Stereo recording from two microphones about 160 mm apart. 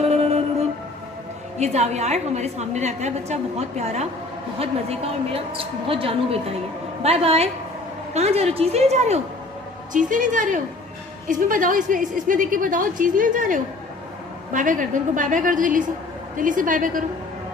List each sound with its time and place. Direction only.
0.0 s music: 40° right (ahead or behind)
1.6 s a woman's voice: 45° right (ahead or behind)
9.9 s a woman's voice: 55° right (ahead or behind)